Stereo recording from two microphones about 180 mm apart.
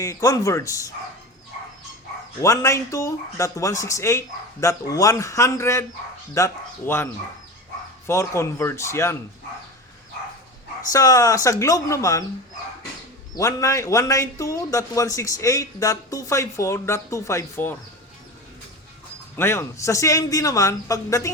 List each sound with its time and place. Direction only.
0.0 s a man's voice: 20° left (ahead or behind)
2.4 s a man's voice: 15° left (ahead or behind)
10.9 s a man's voice: 20° left (ahead or behind)
13.3 s a man's voice: 15° left (ahead or behind)
19.4 s a man's voice: 15° left (ahead or behind)